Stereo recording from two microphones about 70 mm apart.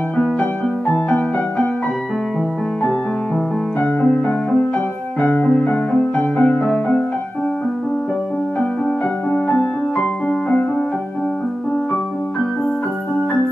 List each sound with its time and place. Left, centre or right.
0.4 s music: centre
3.8 s music: centre
9.3 s music: centre